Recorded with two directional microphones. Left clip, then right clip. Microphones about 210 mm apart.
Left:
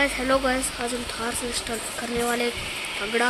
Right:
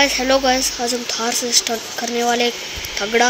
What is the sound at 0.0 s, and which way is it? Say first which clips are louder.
Speech: right 7 dB; 15° right (ahead or behind).